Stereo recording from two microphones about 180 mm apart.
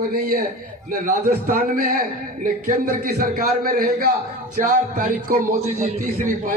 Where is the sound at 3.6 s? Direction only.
55° right (ahead or behind).